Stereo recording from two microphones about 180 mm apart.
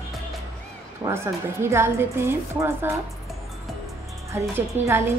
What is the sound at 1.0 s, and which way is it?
A woman's voice, 15° right (ahead or behind).